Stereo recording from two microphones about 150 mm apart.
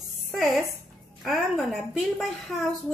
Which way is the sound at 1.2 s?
Centre (ahead or behind).